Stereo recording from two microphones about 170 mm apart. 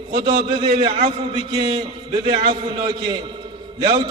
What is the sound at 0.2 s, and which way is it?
A man's voice, 30° right (ahead or behind).